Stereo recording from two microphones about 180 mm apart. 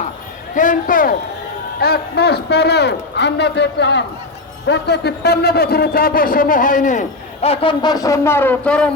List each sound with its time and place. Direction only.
0.5 s a man's voice: 45° left (ahead or behind)
1.8 s a man's voice: 60° left (ahead or behind); by 7.0 s 45° left (ahead or behind)
7.4 s a man's voice: 30° left (ahead or behind); by 8.9 s 5° left (ahead or behind)